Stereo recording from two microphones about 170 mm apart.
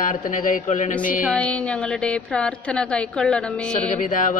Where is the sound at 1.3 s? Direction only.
5° left (ahead or behind).